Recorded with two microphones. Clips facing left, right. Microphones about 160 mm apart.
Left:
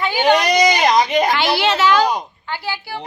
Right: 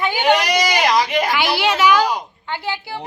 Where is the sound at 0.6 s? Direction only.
20° left (ahead or behind).